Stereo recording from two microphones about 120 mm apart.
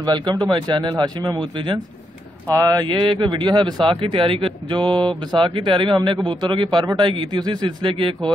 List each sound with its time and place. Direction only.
0.0 s speech: 35° right (ahead or behind)